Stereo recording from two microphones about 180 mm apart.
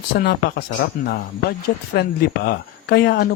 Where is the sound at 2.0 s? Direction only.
60° left (ahead or behind).